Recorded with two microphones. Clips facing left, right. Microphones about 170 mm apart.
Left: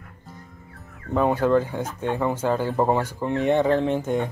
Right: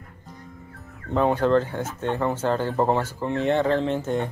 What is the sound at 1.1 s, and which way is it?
Speech, 5° left (ahead or behind).